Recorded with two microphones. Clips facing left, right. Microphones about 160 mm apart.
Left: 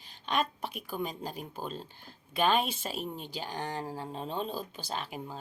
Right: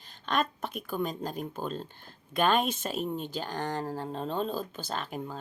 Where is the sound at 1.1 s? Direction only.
5° left (ahead or behind).